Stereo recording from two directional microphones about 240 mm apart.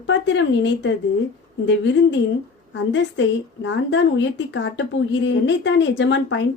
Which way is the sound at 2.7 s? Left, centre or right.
Left.